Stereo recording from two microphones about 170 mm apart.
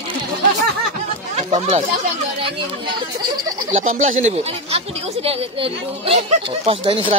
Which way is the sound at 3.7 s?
45° right (ahead or behind).